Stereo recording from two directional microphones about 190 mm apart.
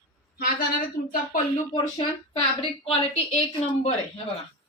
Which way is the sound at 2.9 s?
30° left (ahead or behind).